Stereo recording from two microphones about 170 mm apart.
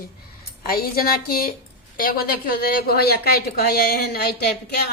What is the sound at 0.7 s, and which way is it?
Speech, 60° left (ahead or behind).